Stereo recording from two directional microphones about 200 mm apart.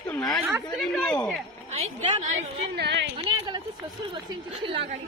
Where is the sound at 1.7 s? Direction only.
30° right (ahead or behind).